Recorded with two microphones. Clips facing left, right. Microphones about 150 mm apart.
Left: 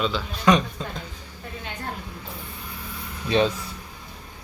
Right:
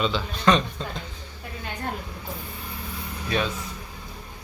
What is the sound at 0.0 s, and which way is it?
A man's voice, centre (ahead or behind).